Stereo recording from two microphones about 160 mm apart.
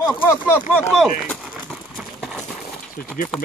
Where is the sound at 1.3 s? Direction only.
5° left (ahead or behind).